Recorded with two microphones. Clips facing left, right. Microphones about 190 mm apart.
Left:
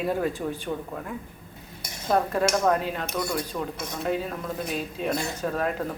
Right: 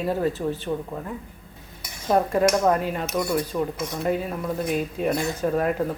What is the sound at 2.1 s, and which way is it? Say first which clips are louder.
A woman's voice: right 3 dB; 5° right (ahead or behind).